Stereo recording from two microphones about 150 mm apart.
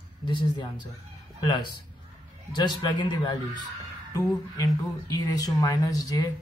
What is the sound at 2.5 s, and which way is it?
Speech, 30° left (ahead or behind).